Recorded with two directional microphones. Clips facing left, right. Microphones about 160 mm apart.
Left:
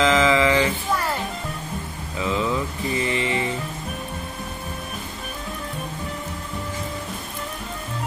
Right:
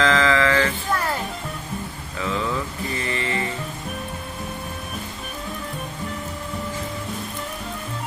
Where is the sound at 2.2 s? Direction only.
15° left (ahead or behind).